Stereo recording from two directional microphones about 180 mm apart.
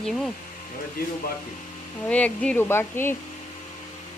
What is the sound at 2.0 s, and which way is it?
A woman's voice, 5° left (ahead or behind).